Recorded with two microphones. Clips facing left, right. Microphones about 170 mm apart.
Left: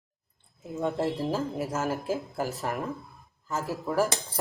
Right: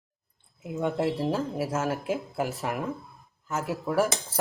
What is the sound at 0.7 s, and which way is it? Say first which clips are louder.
Speech: right 1 dB; centre (ahead or behind).